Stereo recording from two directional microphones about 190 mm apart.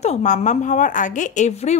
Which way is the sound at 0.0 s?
35° left (ahead or behind).